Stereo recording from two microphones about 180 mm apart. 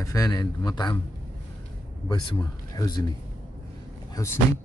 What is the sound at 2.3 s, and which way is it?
Speech, 20° left (ahead or behind).